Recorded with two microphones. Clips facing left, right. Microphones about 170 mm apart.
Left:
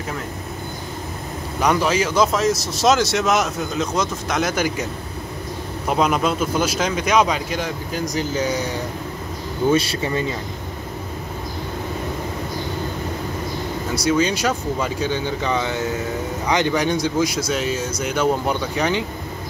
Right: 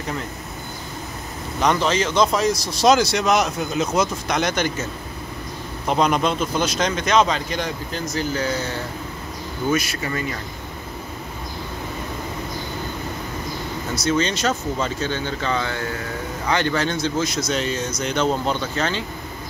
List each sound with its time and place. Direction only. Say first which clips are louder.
1.6 s speech: left 1 dB; 10° left (ahead or behind)
5.9 s speech: even; 5° left (ahead or behind)
9.7 s speech: left 4 dB; 30° left (ahead or behind)
13.9 s speech: left 2 dB; 10° left (ahead or behind)